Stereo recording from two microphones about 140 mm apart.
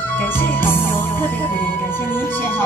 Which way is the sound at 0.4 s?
15° left (ahead or behind).